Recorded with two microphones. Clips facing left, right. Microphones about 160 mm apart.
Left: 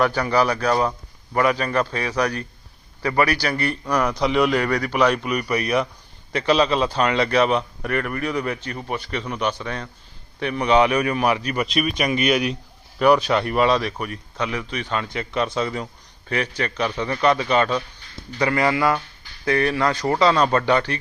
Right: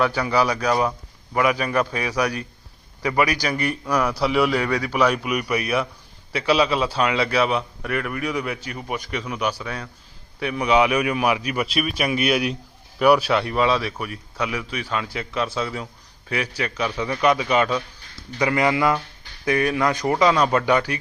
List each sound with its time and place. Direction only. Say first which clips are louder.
0.0 s a man's voice: left 1 dB; 5° right (ahead or behind)